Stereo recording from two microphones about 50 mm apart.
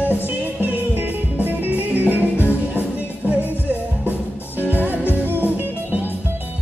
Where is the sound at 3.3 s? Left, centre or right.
Right.